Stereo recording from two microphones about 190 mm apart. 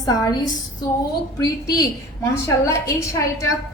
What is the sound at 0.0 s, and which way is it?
Speech, 20° left (ahead or behind).